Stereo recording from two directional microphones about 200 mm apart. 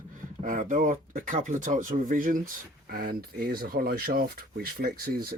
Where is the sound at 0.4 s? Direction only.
40° right (ahead or behind).